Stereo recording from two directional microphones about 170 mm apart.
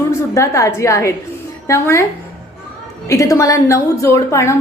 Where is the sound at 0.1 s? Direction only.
15° left (ahead or behind).